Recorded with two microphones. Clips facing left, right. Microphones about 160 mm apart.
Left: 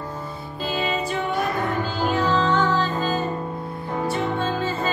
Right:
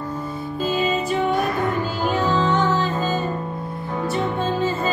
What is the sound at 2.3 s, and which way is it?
Music, 20° right (ahead or behind).